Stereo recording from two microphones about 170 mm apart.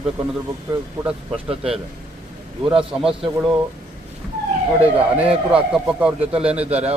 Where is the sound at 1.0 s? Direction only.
5° right (ahead or behind).